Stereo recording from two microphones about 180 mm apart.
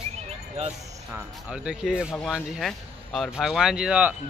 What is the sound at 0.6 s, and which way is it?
Speech, 35° right (ahead or behind).